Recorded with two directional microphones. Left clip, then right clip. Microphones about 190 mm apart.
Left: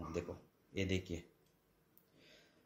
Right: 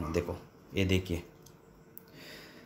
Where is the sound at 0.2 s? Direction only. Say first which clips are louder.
Right 11 dB; 15° right (ahead or behind).